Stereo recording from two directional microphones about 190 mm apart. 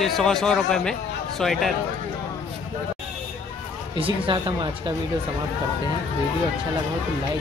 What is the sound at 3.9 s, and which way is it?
Speech, 25° right (ahead or behind).